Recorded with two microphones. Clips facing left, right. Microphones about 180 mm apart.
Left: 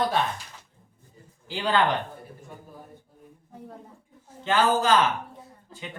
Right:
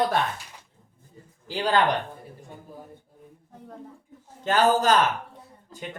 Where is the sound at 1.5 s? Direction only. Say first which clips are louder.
Right 2 dB; 40° right (ahead or behind).